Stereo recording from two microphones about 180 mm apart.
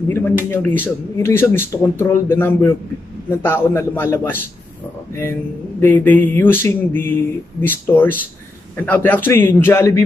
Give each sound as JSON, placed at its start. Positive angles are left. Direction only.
{"t": 0.1, "sound": "speech", "side_deg": 10}
{"t": 5.8, "sound": "speech", "side_deg": 10}